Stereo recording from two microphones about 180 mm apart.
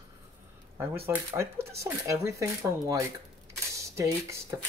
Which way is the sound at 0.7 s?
15° right (ahead or behind).